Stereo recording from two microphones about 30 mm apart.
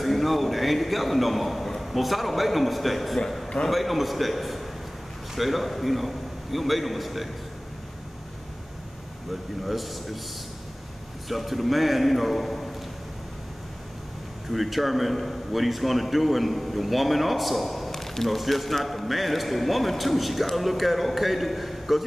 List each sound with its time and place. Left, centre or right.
0.0 s a sound: centre
1.8 s a man's voice: centre
9.7 s a man's voice: centre
11.2 s a man's voice: centre
14.5 s a man's voice: centre